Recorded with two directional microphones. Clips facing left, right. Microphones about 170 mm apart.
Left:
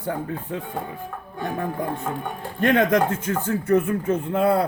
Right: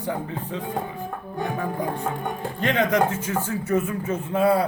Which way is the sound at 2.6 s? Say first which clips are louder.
Left 3 dB; 55° left (ahead or behind).